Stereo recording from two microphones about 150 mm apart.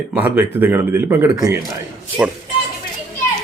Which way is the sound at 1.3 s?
25° right (ahead or behind).